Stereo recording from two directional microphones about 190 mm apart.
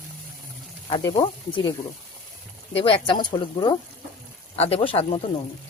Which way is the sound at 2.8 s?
30° left (ahead or behind).